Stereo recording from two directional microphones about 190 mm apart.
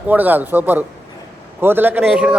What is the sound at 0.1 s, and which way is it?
A man's voice, 10° right (ahead or behind).